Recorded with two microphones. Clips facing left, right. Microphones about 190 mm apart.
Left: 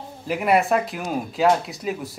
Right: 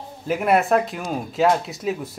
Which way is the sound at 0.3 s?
Centre (ahead or behind).